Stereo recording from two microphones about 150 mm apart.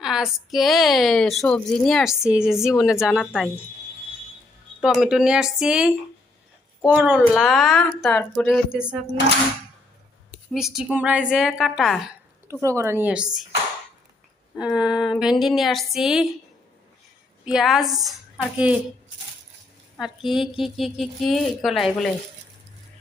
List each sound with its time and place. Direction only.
0.0 s a woman's voice: 5° right (ahead or behind)
4.8 s a woman's voice: 5° right (ahead or behind)
10.5 s a woman's voice: 5° right (ahead or behind)
12.5 s speech: 20° right (ahead or behind)
14.6 s a woman's voice: 5° right (ahead or behind)
17.4 s a woman's voice: 5° right (ahead or behind)
20.0 s a woman's voice: centre (ahead or behind)